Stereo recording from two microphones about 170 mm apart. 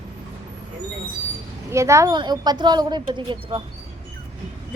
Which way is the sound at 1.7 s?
15° right (ahead or behind).